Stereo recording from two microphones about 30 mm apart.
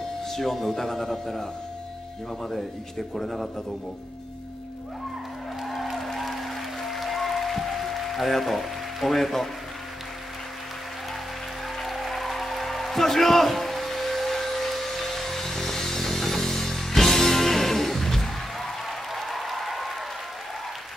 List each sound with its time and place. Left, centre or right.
0.3 s a man's voice: centre
5.7 s music: centre
11.8 s music: centre
18.9 s applause: centre